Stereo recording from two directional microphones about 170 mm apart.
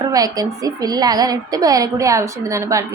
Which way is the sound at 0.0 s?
20° right (ahead or behind).